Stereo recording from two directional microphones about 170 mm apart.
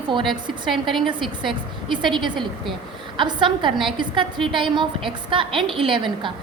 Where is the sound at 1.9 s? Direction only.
30° right (ahead or behind).